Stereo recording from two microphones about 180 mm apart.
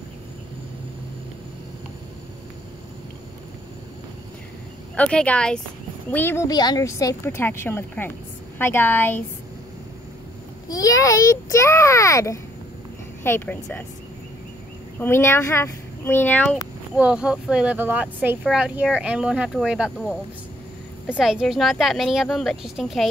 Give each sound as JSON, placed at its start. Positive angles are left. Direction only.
{"t": 4.9, "sound": "speech", "side_deg": 5}
{"t": 10.7, "sound": "speech", "side_deg": 20}
{"t": 15.0, "sound": "speech", "side_deg": 15}
{"t": 16.9, "sound": "speech", "side_deg": -5}
{"t": 21.2, "sound": "speech", "side_deg": 0}